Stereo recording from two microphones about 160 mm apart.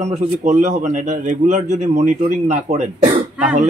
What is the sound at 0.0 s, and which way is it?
A man's voice, 40° right (ahead or behind).